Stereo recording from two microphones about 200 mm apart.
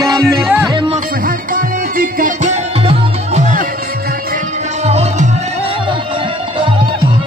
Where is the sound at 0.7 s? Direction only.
25° right (ahead or behind).